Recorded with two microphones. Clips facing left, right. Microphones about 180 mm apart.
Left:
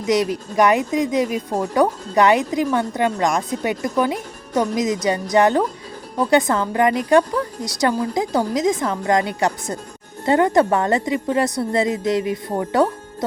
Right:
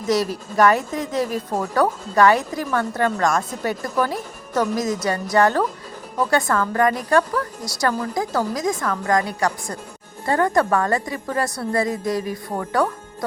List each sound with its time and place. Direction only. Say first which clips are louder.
0.0 s a woman's voice: left 2 dB; 15° left (ahead or behind)